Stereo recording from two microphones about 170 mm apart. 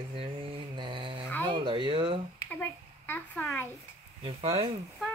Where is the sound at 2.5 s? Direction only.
10° left (ahead or behind).